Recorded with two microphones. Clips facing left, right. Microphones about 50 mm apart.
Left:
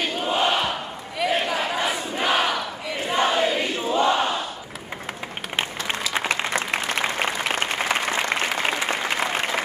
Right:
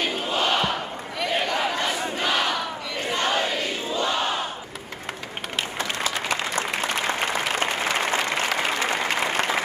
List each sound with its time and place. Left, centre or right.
0.0 s crowd: centre
1.2 s battle cry: centre
3.1 s crowd: centre
3.9 s battle cry: left
6.1 s applause: left